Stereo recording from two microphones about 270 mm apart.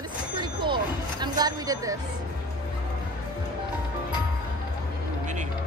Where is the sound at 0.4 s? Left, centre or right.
Centre.